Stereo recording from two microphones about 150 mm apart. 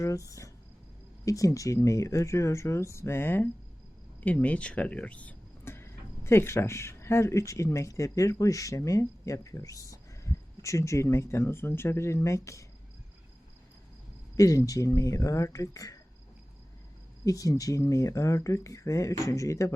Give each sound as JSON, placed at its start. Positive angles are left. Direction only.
{"t": 0.0, "sound": "speech", "side_deg": 20}
{"t": 14.3, "sound": "speech", "side_deg": 20}
{"t": 17.2, "sound": "speech", "side_deg": 20}